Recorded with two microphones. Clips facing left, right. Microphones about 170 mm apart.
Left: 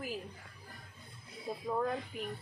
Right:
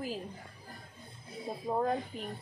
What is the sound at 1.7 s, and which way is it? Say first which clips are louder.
Speech: right 3 dB; 35° right (ahead or behind).